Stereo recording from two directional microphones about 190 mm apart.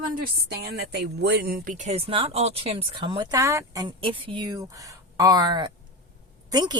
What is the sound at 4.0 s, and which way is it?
Speech, 25° right (ahead or behind).